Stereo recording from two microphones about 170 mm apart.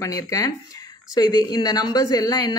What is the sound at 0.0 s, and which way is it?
A woman's voice, 20° left (ahead or behind).